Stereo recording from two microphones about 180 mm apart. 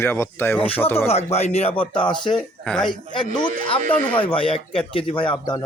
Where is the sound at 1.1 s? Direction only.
35° left (ahead or behind).